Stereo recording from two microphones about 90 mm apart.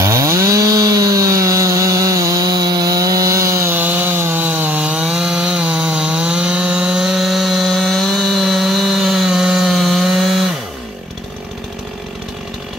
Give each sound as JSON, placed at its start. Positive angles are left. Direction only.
{"t": 0.0, "sound": "chainsaw", "side_deg": -35}
{"t": 3.7, "sound": "chainsaw", "side_deg": -20}